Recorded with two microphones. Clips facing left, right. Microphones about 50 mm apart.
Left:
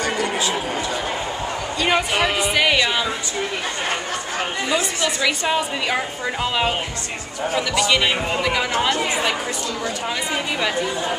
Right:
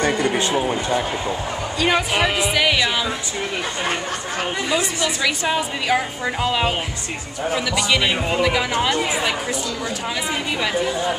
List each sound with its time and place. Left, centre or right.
0.0 s speech: right
1.8 s a woman's voice: centre
4.6 s a woman's voice: centre